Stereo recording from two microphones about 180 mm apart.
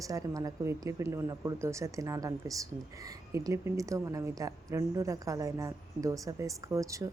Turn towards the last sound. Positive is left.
turn(degrees=-15)  # may be behind; listen again after turning